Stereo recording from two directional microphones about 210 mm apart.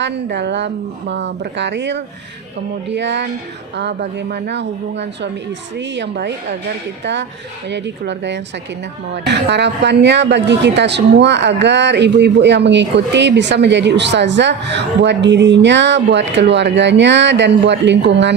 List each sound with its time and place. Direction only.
0.0 s speech: 55° right (ahead or behind)